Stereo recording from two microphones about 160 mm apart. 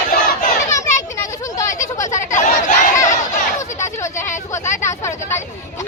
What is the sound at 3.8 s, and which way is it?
Vehicle, 15° left (ahead or behind).